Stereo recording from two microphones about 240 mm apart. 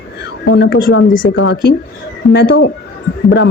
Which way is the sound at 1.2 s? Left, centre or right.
Left.